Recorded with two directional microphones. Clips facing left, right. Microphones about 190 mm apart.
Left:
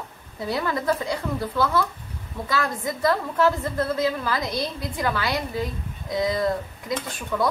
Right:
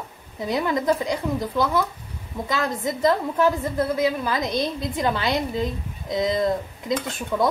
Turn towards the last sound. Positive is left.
turn(degrees=-20)  # may be behind; listen again after turning